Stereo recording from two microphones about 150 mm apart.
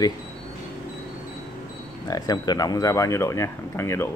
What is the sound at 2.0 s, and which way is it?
Speech, 25° left (ahead or behind).